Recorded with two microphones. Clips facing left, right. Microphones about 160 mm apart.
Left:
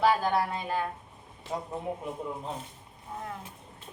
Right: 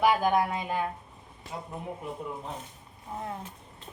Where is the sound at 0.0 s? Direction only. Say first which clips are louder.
Right 1 dB; 15° right (ahead or behind).